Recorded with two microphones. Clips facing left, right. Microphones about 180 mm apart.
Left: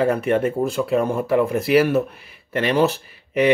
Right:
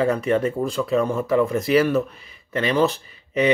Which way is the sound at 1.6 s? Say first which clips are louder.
Left 3 dB; 65° left (ahead or behind).